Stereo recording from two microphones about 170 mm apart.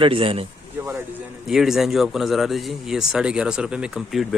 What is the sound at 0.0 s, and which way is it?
Speech, 35° right (ahead or behind).